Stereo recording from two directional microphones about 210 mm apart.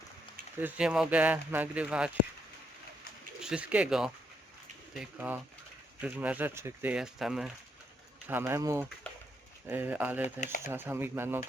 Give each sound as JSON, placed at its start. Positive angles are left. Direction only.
{"t": 0.6, "sound": "speech", "side_deg": -5}
{"t": 3.4, "sound": "speech", "side_deg": -5}
{"t": 10.2, "sound": "speech", "side_deg": 35}
{"t": 10.6, "sound": "speech", "side_deg": -10}